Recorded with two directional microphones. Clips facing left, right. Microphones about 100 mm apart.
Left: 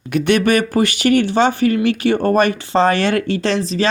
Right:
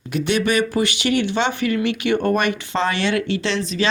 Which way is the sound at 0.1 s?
55° left (ahead or behind).